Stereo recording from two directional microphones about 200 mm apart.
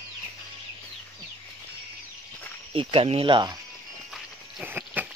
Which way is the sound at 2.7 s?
25° right (ahead or behind).